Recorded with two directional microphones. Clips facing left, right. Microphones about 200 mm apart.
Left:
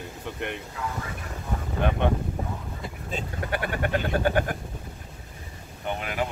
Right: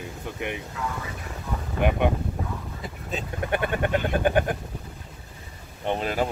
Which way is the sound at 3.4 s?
20° right (ahead or behind).